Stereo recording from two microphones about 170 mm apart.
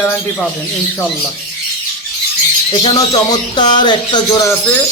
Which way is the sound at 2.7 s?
25° left (ahead or behind).